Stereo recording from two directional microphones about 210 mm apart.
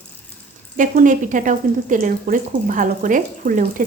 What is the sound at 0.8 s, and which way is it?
Speech, 40° right (ahead or behind).